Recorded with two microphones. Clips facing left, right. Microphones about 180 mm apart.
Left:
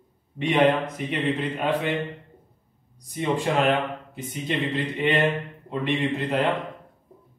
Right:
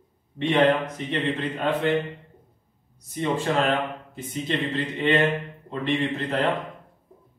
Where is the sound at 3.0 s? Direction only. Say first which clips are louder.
Even; 15° left (ahead or behind).